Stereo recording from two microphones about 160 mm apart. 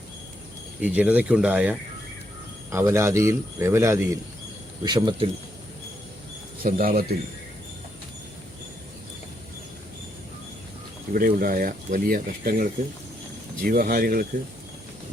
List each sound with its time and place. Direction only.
0.8 s speech: 10° right (ahead or behind)
4.9 s speech: 30° right (ahead or behind)
6.6 s speech: 65° right (ahead or behind)
11.1 s speech: 65° right (ahead or behind)
13.7 s speech: 65° right (ahead or behind)